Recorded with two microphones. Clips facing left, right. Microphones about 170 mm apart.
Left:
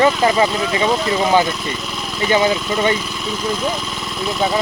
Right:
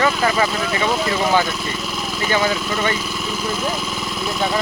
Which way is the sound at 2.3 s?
20° left (ahead or behind).